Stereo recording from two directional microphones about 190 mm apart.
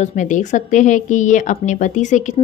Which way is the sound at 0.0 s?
40° left (ahead or behind).